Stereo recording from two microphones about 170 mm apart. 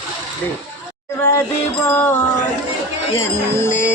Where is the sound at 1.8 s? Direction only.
10° left (ahead or behind).